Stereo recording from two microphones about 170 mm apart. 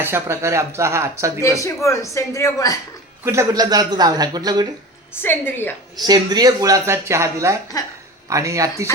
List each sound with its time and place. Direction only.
0.0 s speech: 15° right (ahead or behind)
1.5 s a woman's voice: 15° left (ahead or behind)
3.2 s speech: 20° right (ahead or behind)
5.1 s a woman's voice: 10° left (ahead or behind)
6.0 s speech: 25° right (ahead or behind)
7.7 s a woman's voice: 20° left (ahead or behind)
8.3 s speech: 20° right (ahead or behind)